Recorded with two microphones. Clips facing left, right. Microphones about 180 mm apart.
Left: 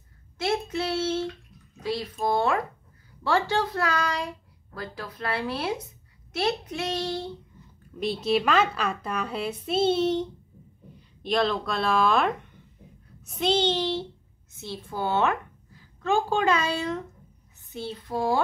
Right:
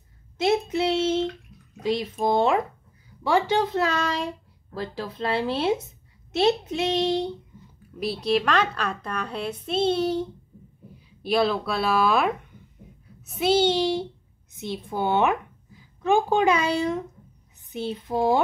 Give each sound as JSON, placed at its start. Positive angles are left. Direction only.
{"t": 0.4, "sound": "child singing", "side_deg": -20}
{"t": 1.8, "sound": "speech", "side_deg": -20}
{"t": 8.0, "sound": "a woman's voice", "side_deg": 0}